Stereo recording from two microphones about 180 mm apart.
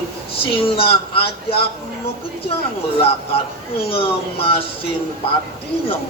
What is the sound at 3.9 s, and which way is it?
Speech, 30° left (ahead or behind).